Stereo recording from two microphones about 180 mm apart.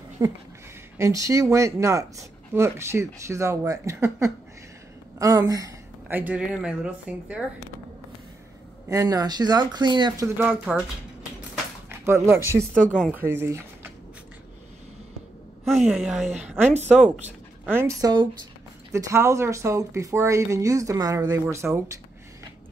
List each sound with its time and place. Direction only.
0.2 s speech: 20° right (ahead or behind)
8.8 s speech: 15° right (ahead or behind)
12.0 s speech: 15° right (ahead or behind)
15.9 s speech: 5° right (ahead or behind)